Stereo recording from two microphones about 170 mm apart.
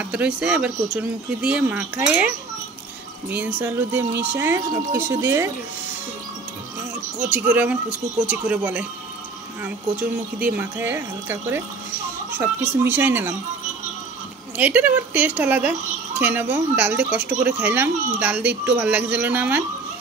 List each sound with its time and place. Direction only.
0.1 s a child's voice: 5° right (ahead or behind)
7.2 s a child's voice: 10° right (ahead or behind)
14.6 s a child's voice: 10° right (ahead or behind)